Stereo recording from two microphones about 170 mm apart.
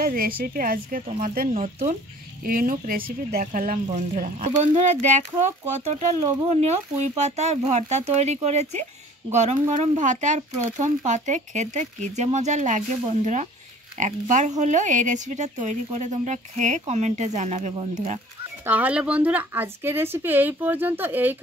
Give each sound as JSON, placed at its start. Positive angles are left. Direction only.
{"t": 0.0, "sound": "a woman's voice", "side_deg": -60}
{"t": 18.7, "sound": "speech", "side_deg": -10}